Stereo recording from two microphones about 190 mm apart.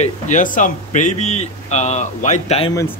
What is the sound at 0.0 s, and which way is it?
Speech, 40° left (ahead or behind).